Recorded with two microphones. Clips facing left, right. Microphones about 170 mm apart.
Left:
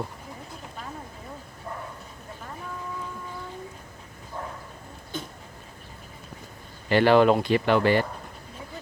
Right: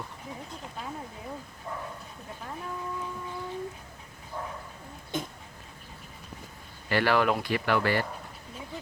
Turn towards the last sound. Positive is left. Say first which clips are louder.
# left 6 dB
turn(degrees=20)  # may be behind; listen again after turning